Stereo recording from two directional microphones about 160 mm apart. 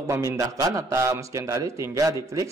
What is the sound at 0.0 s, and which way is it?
A man's voice, 20° right (ahead or behind).